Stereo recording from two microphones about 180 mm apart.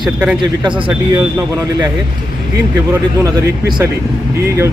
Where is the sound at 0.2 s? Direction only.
10° right (ahead or behind).